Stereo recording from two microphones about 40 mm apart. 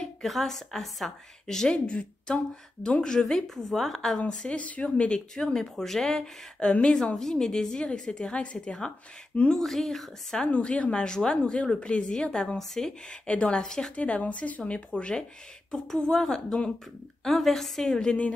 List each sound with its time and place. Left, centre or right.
0.0 s a woman's voice: centre
2.3 s speech: left
3.0 s a woman's voice: centre
4.3 s speech: left
4.6 s speech: left
5.3 s a woman's voice: centre
9.5 s a woman's voice: centre
10.5 s a woman's voice: left; by 12.9 s centre
13.3 s speech: left
13.9 s a woman's voice: left; by 18.1 s centre